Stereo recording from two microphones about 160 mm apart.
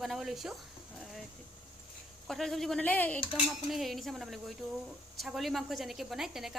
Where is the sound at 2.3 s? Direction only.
Centre (ahead or behind).